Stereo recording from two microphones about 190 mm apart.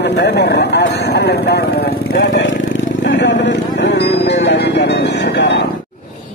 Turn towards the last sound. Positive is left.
turn(degrees=65)  # may be behind; listen again after turning